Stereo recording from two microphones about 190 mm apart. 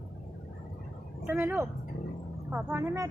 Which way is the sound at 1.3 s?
10° right (ahead or behind).